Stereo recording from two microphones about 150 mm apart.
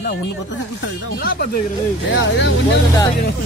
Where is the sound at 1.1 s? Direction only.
80° left.